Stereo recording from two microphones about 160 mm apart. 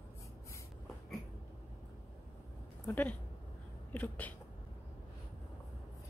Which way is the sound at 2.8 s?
10° left (ahead or behind).